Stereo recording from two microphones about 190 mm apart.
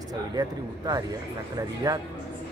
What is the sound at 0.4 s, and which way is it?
Speech, 20° right (ahead or behind).